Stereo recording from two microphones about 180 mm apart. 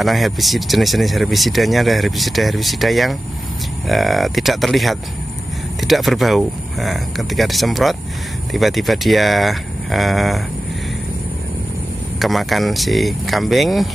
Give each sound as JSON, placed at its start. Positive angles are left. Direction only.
{"t": 0.0, "sound": "speech", "side_deg": 0}
{"t": 12.2, "sound": "speech", "side_deg": 0}